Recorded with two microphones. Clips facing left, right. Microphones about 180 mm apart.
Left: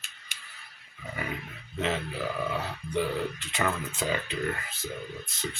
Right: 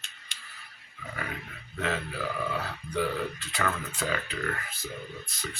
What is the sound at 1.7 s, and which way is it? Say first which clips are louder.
Speech: left 1 dB; 20° left (ahead or behind).